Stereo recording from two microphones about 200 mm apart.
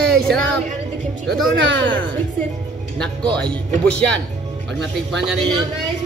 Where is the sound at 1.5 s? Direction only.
65° right (ahead or behind).